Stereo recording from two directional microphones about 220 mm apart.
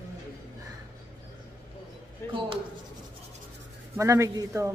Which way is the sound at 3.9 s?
15° right (ahead or behind).